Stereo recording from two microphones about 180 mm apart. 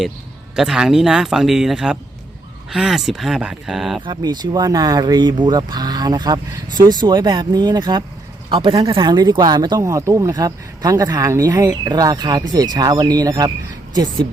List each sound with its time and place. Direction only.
0.5 s speech: 5° right (ahead or behind)
4.0 s speech: 25° right (ahead or behind)